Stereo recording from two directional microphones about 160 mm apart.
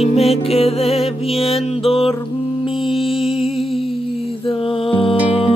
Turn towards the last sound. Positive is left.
turn(degrees=35)  # may be behind; listen again after turning